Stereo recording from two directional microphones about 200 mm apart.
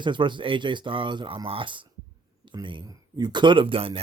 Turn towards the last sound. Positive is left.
turn(degrees=-25)  # may be behind; listen again after turning